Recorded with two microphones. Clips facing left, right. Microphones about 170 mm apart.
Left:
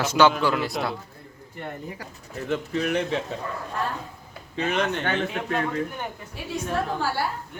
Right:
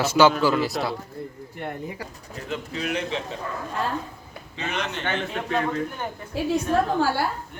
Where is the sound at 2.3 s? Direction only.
50° left (ahead or behind).